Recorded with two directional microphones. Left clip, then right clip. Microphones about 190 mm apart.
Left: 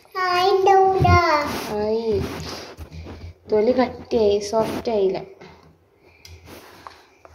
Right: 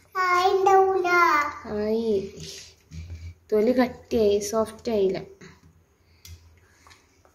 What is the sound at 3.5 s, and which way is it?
A woman's voice, 15° right (ahead or behind).